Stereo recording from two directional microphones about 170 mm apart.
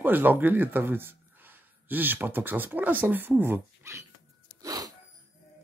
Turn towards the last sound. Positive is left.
turn(degrees=-20)  # may be behind; listen again after turning